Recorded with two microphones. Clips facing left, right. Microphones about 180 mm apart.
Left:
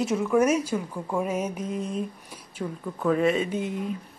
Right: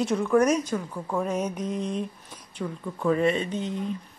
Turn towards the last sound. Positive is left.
turn(degrees=10)  # may be behind; listen again after turning